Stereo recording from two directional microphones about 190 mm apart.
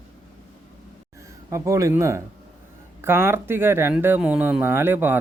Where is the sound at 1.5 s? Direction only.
15° right (ahead or behind).